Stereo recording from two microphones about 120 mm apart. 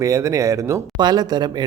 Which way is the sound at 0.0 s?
25° right (ahead or behind).